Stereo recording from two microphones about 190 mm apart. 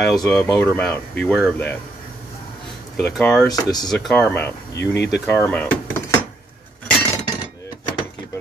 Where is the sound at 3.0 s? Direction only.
5° left (ahead or behind).